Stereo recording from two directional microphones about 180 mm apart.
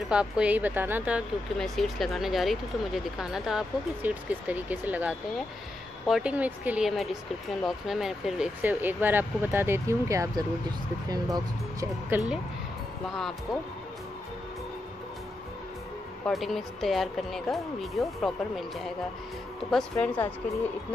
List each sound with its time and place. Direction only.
0.1 s speech: 5° right (ahead or behind)
1.6 s speech: centre (ahead or behind); by 12.2 s 20° right (ahead or behind)
13.1 s speech: centre (ahead or behind)
16.3 s speech: centre (ahead or behind)
19.7 s speech: 5° left (ahead or behind)